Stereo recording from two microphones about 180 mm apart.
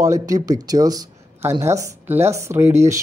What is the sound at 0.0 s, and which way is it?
Speech, 20° right (ahead or behind).